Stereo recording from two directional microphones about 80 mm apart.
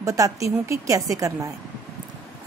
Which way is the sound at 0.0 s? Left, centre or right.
Right.